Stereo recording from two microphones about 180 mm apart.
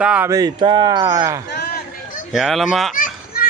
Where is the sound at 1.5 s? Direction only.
65° left (ahead or behind).